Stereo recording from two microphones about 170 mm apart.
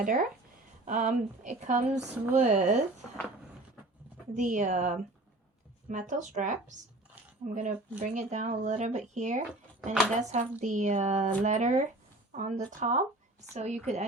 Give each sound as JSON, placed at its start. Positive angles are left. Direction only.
{"t": 0.0, "sound": "speech", "side_deg": -55}
{"t": 4.4, "sound": "speech", "side_deg": -45}